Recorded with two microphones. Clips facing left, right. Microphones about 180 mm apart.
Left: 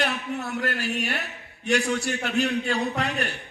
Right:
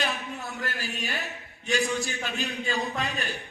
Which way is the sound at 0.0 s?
70° left (ahead or behind).